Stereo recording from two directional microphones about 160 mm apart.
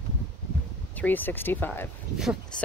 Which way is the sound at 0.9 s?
10° left (ahead or behind).